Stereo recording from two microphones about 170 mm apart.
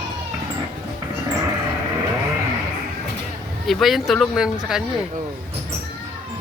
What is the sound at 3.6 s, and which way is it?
Speech, centre (ahead or behind).